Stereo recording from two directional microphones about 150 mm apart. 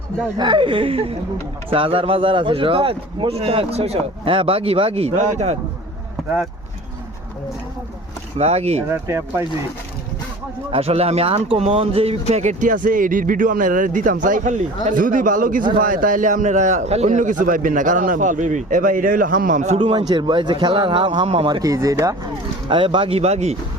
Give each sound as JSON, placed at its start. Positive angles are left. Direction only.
{"t": 0.3, "sound": "a man's voice", "side_deg": -30}
{"t": 8.4, "sound": "speech", "side_deg": -45}
{"t": 8.9, "sound": "speech", "side_deg": -20}
{"t": 10.7, "sound": "a man's voice", "side_deg": -40}
{"t": 12.3, "sound": "a man's voice", "side_deg": -50}
{"t": 19.8, "sound": "a man's voice", "side_deg": -35}
{"t": 22.7, "sound": "a man's voice", "side_deg": -35}